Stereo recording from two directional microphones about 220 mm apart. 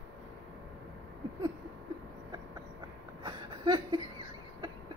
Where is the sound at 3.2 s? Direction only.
20° right (ahead or behind).